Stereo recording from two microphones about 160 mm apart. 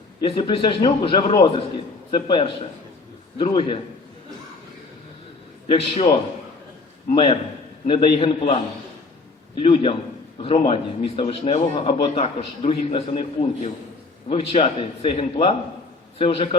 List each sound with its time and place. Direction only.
0.2 s a man's voice: 35° left (ahead or behind)
5.7 s a man's voice: 40° left (ahead or behind)
9.6 s a man's voice: 35° left (ahead or behind)
11.9 s a man's voice: 35° left (ahead or behind)